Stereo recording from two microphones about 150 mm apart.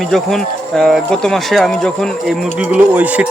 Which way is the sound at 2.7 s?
10° right (ahead or behind).